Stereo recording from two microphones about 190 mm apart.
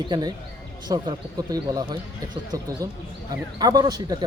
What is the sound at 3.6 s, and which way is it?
Speech, 20° right (ahead or behind).